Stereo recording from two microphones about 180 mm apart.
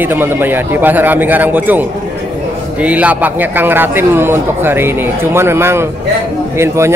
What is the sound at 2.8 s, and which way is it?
A man's voice, 10° right (ahead or behind).